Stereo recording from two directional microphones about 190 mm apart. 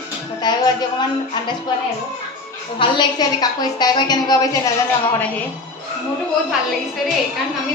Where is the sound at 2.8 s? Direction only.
25° left (ahead or behind).